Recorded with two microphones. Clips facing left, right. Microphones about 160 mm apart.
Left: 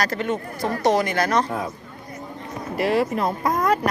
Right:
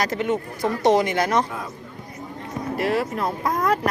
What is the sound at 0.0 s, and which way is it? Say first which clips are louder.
A woman's voice: right 1 dB; 15° right (ahead or behind).